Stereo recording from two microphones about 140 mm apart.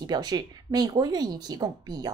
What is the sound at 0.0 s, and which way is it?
Speech, 30° right (ahead or behind).